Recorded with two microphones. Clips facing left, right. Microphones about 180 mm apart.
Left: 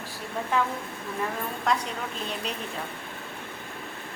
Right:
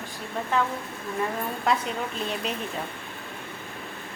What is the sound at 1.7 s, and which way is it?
Speech, 5° right (ahead or behind).